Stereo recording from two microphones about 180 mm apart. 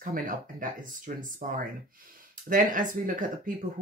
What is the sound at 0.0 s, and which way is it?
Speech, 50° right (ahead or behind).